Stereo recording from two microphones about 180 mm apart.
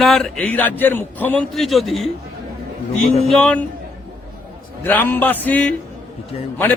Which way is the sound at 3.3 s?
5° left (ahead or behind).